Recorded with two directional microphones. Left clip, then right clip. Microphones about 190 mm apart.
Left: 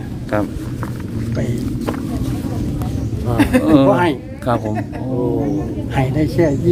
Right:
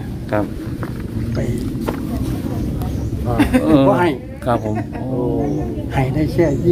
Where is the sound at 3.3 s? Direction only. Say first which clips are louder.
Left 1 dB; 55° left (ahead or behind).